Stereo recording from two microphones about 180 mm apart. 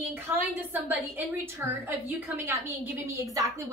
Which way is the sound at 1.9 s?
10° right (ahead or behind).